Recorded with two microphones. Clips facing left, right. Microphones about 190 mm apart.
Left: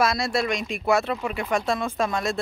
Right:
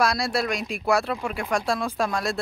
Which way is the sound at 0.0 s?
Centre (ahead or behind).